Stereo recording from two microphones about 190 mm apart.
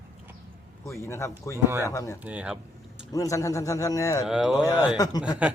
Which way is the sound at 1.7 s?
15° right (ahead or behind).